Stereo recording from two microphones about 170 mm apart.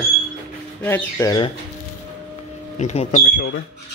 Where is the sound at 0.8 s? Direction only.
10° left (ahead or behind).